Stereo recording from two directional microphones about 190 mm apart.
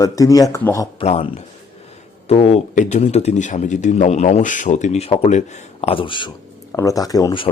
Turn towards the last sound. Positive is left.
turn(degrees=20)  # may be behind; listen again after turning